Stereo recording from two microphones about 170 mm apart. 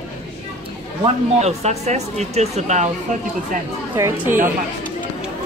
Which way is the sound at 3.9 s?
15° right (ahead or behind).